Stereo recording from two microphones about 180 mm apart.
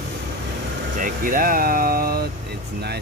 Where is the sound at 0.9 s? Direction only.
50° right (ahead or behind).